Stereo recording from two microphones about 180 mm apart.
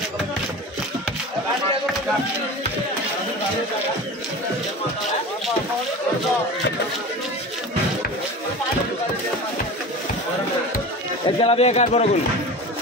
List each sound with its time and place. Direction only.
11.2 s a man's voice: 35° left (ahead or behind)